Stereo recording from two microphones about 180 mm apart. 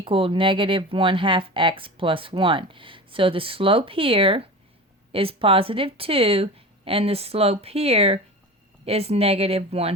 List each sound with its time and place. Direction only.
0.0 s a woman's voice: 30° right (ahead or behind)